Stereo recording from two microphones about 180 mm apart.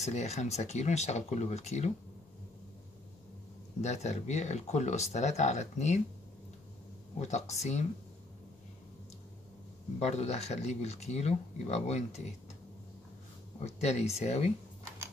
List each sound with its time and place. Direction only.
0.0 s speech: 40° left (ahead or behind)
3.8 s speech: 40° left (ahead or behind)
7.2 s speech: 40° left (ahead or behind)
9.9 s speech: 40° left (ahead or behind)
13.6 s speech: 35° left (ahead or behind)